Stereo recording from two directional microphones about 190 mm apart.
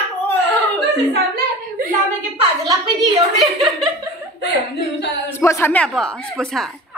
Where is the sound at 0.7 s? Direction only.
50° right (ahead or behind).